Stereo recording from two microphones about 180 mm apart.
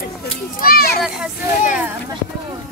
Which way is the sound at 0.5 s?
55° left (ahead or behind).